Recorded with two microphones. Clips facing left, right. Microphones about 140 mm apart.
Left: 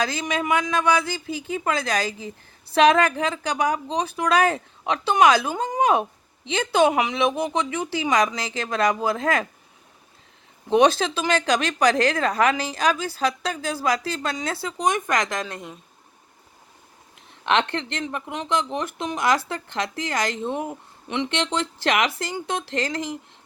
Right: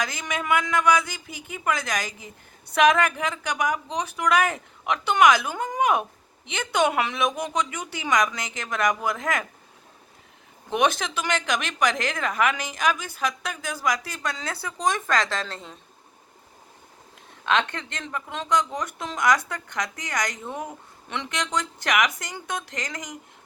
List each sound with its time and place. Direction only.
0.0 s speech: 30° left (ahead or behind)
10.7 s a woman's voice: 30° left (ahead or behind); by 15.7 s 15° left (ahead or behind)
17.4 s speech: 25° left (ahead or behind)